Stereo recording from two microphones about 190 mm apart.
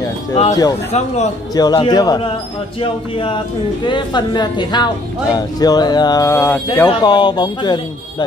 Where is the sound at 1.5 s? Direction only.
20° left (ahead or behind).